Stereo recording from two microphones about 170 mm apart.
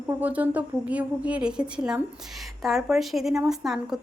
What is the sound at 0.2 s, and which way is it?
A woman's voice, 10° right (ahead or behind).